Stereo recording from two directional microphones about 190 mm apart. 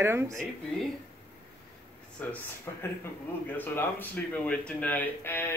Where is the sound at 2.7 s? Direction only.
15° left (ahead or behind).